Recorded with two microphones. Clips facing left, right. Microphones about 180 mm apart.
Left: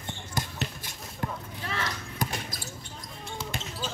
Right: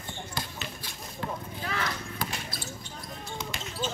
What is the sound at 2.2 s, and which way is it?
Basketball bounce, 45° left (ahead or behind).